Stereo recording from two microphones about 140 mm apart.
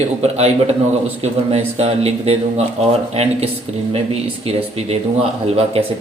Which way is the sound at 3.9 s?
45° right (ahead or behind).